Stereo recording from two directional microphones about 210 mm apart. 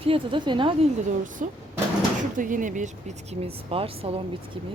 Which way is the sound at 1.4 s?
40° right (ahead or behind).